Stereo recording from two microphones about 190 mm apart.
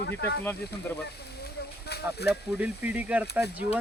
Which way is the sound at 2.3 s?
5° right (ahead or behind).